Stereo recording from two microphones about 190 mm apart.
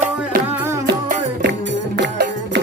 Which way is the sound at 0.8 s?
60° right (ahead or behind).